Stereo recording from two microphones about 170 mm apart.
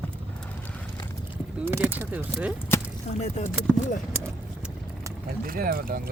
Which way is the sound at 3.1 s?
40° left (ahead or behind).